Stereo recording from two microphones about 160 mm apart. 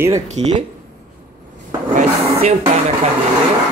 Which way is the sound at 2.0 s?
40° right (ahead or behind).